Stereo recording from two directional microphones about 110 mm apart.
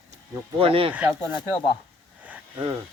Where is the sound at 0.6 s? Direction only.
55° right (ahead or behind).